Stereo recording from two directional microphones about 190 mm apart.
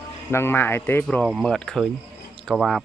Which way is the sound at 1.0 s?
Centre (ahead or behind).